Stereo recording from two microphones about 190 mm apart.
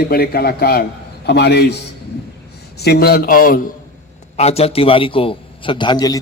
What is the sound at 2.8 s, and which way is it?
Speech, 55° left (ahead or behind).